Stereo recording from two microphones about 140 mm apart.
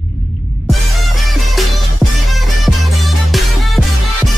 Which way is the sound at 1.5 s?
Centre (ahead or behind).